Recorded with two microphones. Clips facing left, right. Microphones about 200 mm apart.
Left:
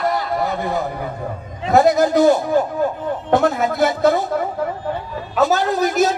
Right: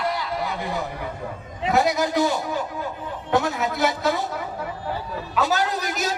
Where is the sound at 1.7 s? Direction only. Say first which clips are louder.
Left 7 dB; 50° left (ahead or behind).